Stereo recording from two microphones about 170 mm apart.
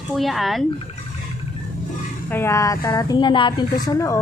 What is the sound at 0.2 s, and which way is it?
Speech, centre (ahead or behind).